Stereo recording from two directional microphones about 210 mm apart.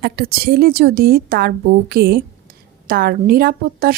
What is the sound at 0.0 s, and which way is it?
A woman's voice, 45° right (ahead or behind).